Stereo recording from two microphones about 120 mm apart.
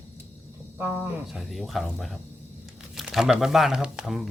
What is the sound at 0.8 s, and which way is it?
Speech, 5° right (ahead or behind).